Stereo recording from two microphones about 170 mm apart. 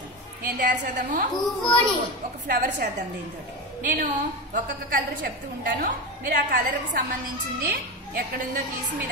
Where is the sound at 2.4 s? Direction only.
50° right (ahead or behind).